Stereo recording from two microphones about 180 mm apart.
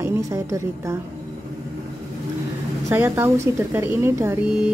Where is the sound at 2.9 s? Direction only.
10° right (ahead or behind).